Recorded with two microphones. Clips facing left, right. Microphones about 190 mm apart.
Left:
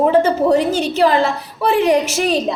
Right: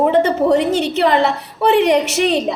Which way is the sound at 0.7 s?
70° right (ahead or behind).